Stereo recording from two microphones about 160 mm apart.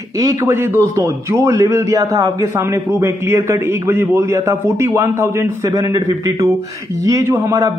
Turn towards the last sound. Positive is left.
turn(degrees=-20)  # may be behind; listen again after turning